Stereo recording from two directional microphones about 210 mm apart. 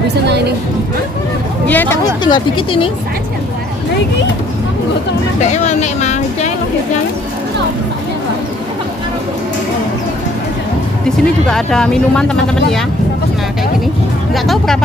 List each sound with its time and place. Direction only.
1.7 s speech: 10° left (ahead or behind)
2.2 s speech: 20° left (ahead or behind)
5.4 s speech: 35° left (ahead or behind)
11.1 s speech: centre (ahead or behind)
14.3 s speech: centre (ahead or behind)